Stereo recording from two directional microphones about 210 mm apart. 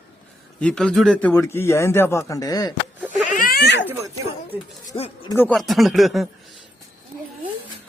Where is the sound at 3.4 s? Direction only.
45° left (ahead or behind).